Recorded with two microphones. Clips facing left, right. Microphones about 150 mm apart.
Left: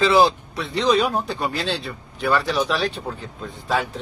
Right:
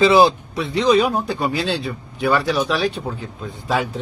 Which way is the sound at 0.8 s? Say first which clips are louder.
Right 3 dB; centre (ahead or behind).